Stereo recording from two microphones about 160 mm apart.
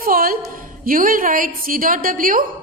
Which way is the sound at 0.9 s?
60° right (ahead or behind).